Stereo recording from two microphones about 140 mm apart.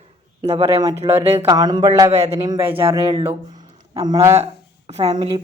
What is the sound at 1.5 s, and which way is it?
Speech, 30° right (ahead or behind).